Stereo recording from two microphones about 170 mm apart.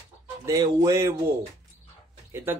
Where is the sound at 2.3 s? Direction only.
15° right (ahead or behind).